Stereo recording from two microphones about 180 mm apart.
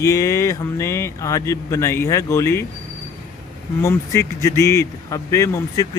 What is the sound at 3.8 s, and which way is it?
Speech, 15° left (ahead or behind).